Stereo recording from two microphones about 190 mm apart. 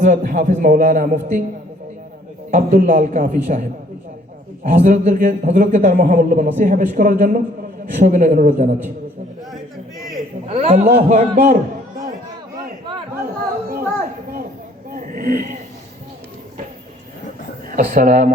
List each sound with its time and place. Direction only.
0.0 s a man's voice: 45° right (ahead or behind)
2.5 s a man's voice: 40° right (ahead or behind)
4.6 s a man's voice: 40° right (ahead or behind)
10.5 s a man's voice: 35° right (ahead or behind)
13.2 s chatter: 50° right (ahead or behind)
14.8 s a sound: 45° right (ahead or behind)
17.7 s speech: 45° right (ahead or behind)